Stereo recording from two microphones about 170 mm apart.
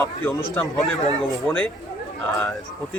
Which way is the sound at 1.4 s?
10° left (ahead or behind).